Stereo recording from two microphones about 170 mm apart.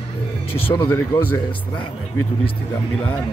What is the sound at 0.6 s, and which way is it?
Speech, 30° left (ahead or behind).